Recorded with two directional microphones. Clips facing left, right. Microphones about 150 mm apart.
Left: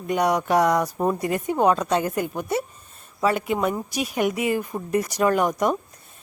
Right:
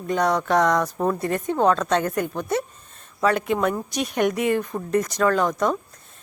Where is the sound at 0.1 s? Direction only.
10° left (ahead or behind).